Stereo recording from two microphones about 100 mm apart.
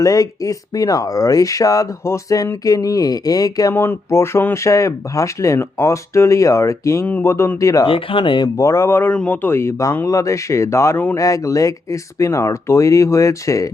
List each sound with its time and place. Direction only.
0.0 s speech: 35° left (ahead or behind)
3.8 s speech: 25° left (ahead or behind)
7.9 s speech: 60° left (ahead or behind)
8.5 s speech: 30° left (ahead or behind)